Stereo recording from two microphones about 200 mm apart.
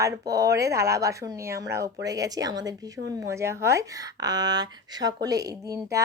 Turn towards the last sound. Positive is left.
turn(degrees=-15)  # may be behind; listen again after turning